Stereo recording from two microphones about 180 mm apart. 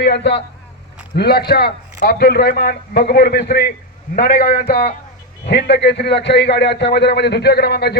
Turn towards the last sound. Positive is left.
turn(degrees=65)  # may be behind; listen again after turning